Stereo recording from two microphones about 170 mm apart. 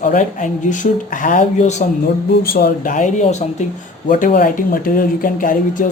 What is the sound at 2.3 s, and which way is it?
Speech, 65° left (ahead or behind).